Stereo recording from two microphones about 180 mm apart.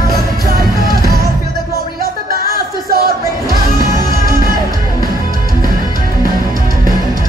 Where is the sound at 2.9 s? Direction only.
55° right (ahead or behind).